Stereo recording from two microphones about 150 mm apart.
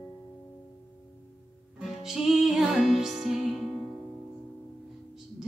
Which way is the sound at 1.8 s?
Centre (ahead or behind).